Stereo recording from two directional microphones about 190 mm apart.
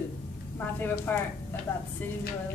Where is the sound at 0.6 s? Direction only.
10° left (ahead or behind).